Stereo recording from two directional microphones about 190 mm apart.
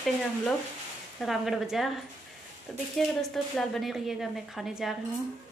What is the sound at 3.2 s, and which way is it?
A woman's voice, centre (ahead or behind).